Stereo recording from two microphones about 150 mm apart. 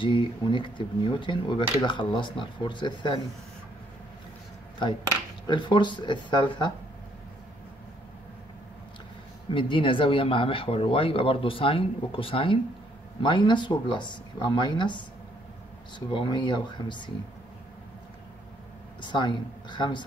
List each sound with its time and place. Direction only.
0.0 s speech: 35° left (ahead or behind)
5.5 s speech: 30° left (ahead or behind)
9.5 s speech: 35° left (ahead or behind)
16.1 s speech: 30° left (ahead or behind)
18.9 s speech: 30° left (ahead or behind)